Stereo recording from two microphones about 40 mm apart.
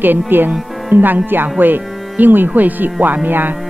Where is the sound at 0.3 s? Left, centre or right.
Right.